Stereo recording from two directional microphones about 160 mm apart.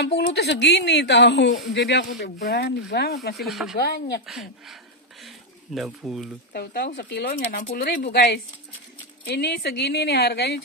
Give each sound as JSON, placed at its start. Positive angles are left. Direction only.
{"t": 0.0, "sound": "a woman's voice", "side_deg": 90}
{"t": 3.4, "sound": "speech", "side_deg": 0}
{"t": 3.7, "sound": "speech", "side_deg": 85}
{"t": 4.3, "sound": "speech", "side_deg": 0}
{"t": 5.8, "sound": "speech", "side_deg": -5}
{"t": 6.5, "sound": "a woman's voice", "side_deg": 75}